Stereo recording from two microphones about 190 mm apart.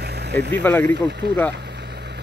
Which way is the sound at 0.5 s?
10° left (ahead or behind).